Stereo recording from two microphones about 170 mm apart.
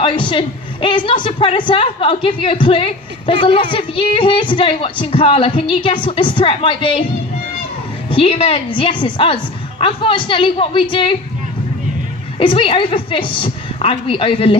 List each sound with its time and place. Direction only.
0.0 s a woman's voice: 30° left (ahead or behind)
8.1 s a woman's voice: 35° left (ahead or behind)
12.4 s a woman's voice: 30° left (ahead or behind)